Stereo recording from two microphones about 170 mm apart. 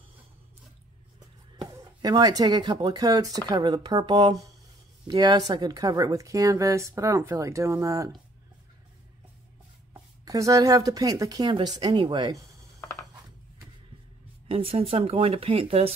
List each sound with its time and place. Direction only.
1.6 s speech: 25° right (ahead or behind)
10.2 s speech: 20° right (ahead or behind)
14.5 s speech: 35° right (ahead or behind)